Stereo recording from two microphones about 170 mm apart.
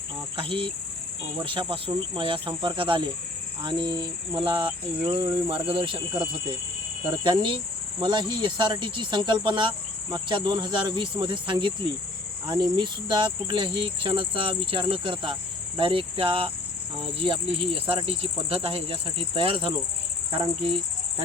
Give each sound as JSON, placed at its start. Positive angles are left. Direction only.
{"t": 0.3, "sound": "speech", "side_deg": -30}
{"t": 7.4, "sound": "cricket", "side_deg": -30}
{"t": 8.3, "sound": "speech", "side_deg": -30}